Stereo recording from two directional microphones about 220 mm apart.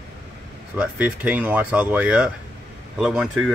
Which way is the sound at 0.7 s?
5° right (ahead or behind).